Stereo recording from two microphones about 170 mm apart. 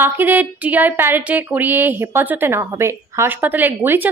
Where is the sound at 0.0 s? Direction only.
10° right (ahead or behind).